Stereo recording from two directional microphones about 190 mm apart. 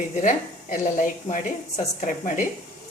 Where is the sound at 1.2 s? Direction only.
40° left (ahead or behind).